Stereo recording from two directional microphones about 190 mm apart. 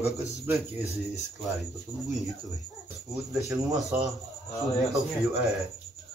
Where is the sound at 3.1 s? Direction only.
15° right (ahead or behind).